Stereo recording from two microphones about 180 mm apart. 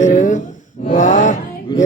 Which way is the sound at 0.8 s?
45° left (ahead or behind).